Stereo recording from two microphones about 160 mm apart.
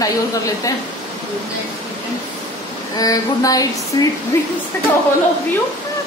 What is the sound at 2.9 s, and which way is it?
A woman's voice, 20° left (ahead or behind).